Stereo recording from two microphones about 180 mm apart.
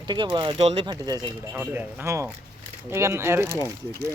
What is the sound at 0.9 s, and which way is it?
Speech, 20° right (ahead or behind).